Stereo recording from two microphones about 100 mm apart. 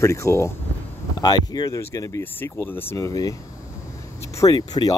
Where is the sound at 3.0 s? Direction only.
35° left (ahead or behind).